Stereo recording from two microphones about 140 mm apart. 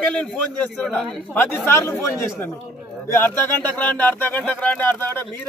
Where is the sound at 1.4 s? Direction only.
15° left (ahead or behind).